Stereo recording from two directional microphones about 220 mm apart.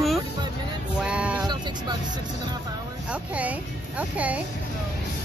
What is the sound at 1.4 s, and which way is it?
Speech, 20° right (ahead or behind).